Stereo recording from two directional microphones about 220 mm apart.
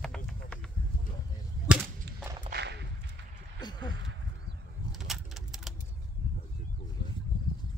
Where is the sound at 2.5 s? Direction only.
50° right (ahead or behind).